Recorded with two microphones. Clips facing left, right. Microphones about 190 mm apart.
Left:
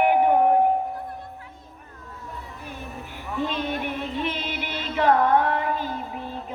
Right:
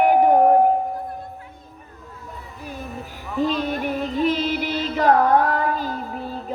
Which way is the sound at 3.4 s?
40° right (ahead or behind).